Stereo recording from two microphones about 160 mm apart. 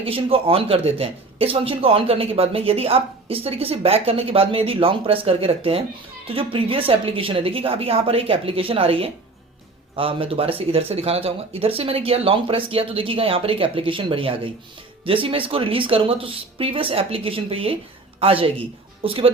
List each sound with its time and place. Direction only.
0.0 s speech: 35° right (ahead or behind)